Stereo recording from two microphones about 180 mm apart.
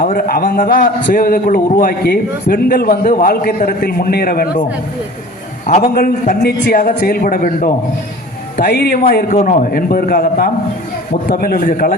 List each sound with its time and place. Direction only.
0.0 s a man's voice: 50° left (ahead or behind)
5.8 s a man's voice: 55° left (ahead or behind)
9.3 s a man's voice: 45° left (ahead or behind)